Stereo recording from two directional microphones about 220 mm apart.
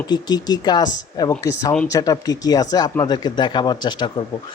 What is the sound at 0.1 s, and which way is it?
Speech, 20° left (ahead or behind).